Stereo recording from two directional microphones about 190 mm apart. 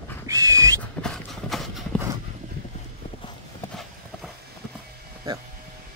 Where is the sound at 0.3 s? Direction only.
15° right (ahead or behind).